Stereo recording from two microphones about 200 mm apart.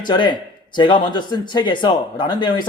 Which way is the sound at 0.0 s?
25° left (ahead or behind).